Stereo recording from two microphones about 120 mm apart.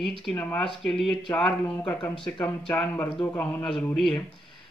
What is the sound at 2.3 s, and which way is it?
Speech, 15° left (ahead or behind).